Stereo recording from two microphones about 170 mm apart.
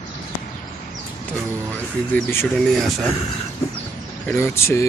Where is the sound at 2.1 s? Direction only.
15° left (ahead or behind).